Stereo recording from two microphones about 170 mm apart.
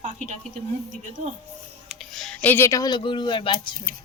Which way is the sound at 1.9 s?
Centre (ahead or behind).